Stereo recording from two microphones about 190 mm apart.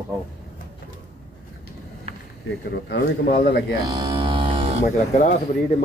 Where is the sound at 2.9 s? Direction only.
65° left (ahead or behind).